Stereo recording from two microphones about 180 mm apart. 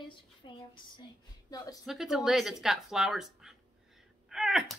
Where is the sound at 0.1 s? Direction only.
25° left (ahead or behind).